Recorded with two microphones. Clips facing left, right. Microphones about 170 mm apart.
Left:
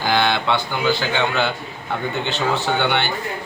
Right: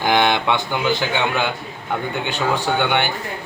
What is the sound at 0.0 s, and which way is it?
Speech, 20° right (ahead or behind).